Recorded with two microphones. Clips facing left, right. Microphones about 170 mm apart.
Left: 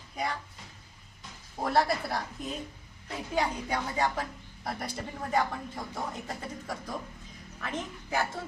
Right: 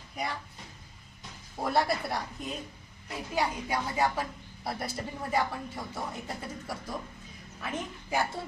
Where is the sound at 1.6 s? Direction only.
Centre (ahead or behind).